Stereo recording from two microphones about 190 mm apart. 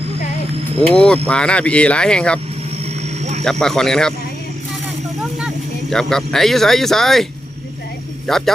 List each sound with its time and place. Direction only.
0.8 s speech: 5° left (ahead or behind)
2.8 s vehicle: 35° right (ahead or behind)
3.4 s speech: centre (ahead or behind)
5.9 s speech: 5° left (ahead or behind)
8.3 s speech: centre (ahead or behind)